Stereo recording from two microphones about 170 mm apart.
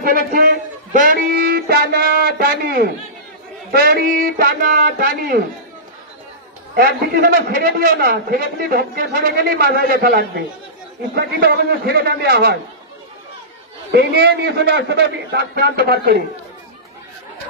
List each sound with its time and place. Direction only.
0.3 s a man's voice: 55° right (ahead or behind)
6.7 s a man's voice: 65° right (ahead or behind)
13.9 s a man's voice: 80° right